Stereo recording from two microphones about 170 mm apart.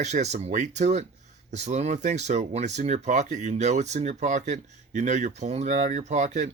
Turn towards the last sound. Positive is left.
turn(degrees=-45)  # may be behind; listen again after turning